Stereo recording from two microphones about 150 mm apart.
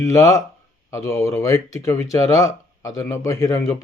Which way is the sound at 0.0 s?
20° left (ahead or behind).